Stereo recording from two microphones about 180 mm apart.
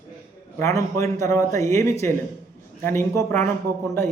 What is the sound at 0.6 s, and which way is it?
A man's voice, 15° left (ahead or behind).